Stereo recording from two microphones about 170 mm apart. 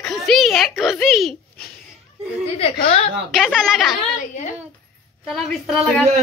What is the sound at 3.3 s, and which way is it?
Speech, centre (ahead or behind).